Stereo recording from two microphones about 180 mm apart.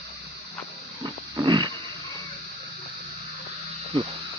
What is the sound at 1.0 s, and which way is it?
Wild animals, 25° right (ahead or behind).